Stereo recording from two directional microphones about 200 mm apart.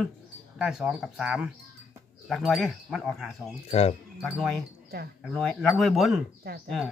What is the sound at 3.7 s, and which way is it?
Speech, 30° left (ahead or behind).